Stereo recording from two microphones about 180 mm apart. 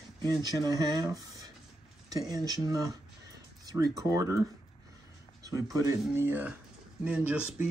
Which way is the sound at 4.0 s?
20° right (ahead or behind).